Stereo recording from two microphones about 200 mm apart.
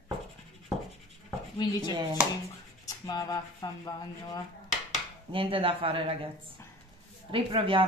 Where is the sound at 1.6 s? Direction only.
20° left (ahead or behind).